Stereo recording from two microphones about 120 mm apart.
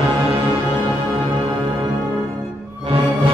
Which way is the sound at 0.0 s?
50° right (ahead or behind).